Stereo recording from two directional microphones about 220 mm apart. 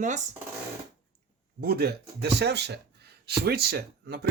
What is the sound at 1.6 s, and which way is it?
Speech, 45° right (ahead or behind).